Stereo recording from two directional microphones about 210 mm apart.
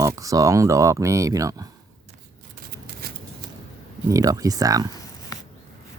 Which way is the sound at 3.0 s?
45° right (ahead or behind).